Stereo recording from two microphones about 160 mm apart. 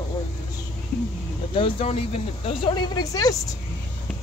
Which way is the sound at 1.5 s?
35° left (ahead or behind).